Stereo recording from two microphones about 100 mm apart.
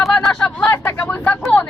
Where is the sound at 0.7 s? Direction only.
20° left (ahead or behind).